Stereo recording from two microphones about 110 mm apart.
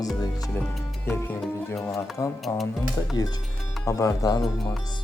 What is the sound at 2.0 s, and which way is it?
Music, 30° left (ahead or behind).